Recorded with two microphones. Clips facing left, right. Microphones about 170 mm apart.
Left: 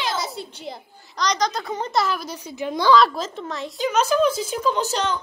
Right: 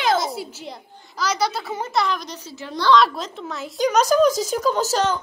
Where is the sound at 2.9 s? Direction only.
Centre (ahead or behind).